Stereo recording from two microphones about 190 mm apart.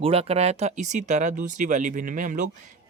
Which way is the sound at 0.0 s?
30° right (ahead or behind).